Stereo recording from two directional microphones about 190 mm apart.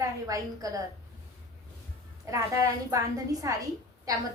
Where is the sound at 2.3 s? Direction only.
15° right (ahead or behind).